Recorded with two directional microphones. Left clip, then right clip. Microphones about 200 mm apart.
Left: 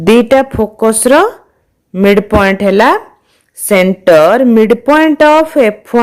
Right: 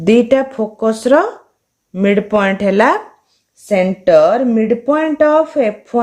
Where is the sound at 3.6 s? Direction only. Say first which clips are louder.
Left 5 dB; 35° left (ahead or behind).